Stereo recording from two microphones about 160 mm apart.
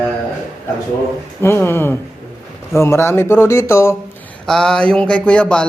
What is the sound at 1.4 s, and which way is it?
Speech, 15° left (ahead or behind).